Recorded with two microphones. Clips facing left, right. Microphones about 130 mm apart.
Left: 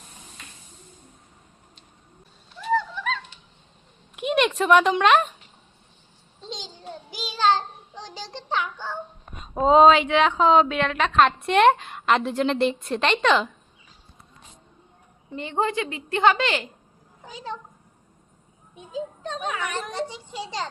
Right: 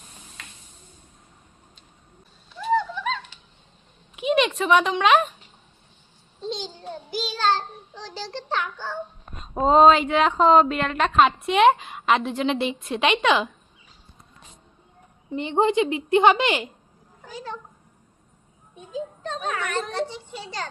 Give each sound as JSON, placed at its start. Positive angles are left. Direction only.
{"t": 2.7, "sound": "a sound", "side_deg": 0}
{"t": 4.1, "sound": "a child's voice", "side_deg": 0}
{"t": 7.2, "sound": "child singing", "side_deg": 15}
{"t": 9.3, "sound": "a woman's voice", "side_deg": 0}
{"t": 15.4, "sound": "a woman's voice", "side_deg": -20}
{"t": 17.3, "sound": "child singing", "side_deg": 15}
{"t": 18.9, "sound": "a child's voice", "side_deg": 15}